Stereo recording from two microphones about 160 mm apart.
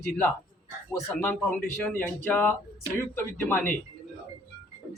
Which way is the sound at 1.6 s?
10° left (ahead or behind).